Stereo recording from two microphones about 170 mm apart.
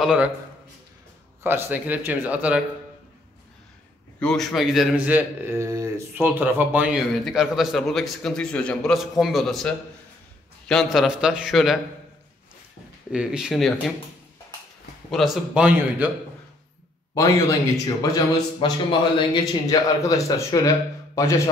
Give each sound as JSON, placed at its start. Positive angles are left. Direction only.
{"t": 0.0, "sound": "a man's voice", "side_deg": -5}
{"t": 1.4, "sound": "speech", "side_deg": -15}
{"t": 4.2, "sound": "a man's voice", "side_deg": 5}
{"t": 13.1, "sound": "a man's voice", "side_deg": -5}
{"t": 15.0, "sound": "a man's voice", "side_deg": 0}
{"t": 17.1, "sound": "speech", "side_deg": 20}